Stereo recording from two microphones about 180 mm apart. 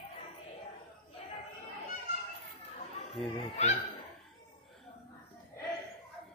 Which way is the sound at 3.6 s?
40° left (ahead or behind).